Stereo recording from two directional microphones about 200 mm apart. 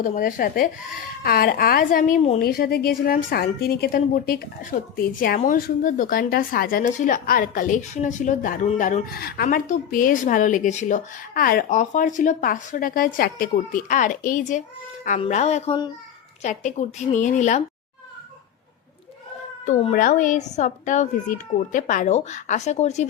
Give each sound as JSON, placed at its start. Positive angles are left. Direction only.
{"t": 0.0, "sound": "a woman's voice", "side_deg": 40}
{"t": 2.4, "sound": "a woman's voice", "side_deg": 50}
{"t": 19.6, "sound": "speech", "side_deg": 40}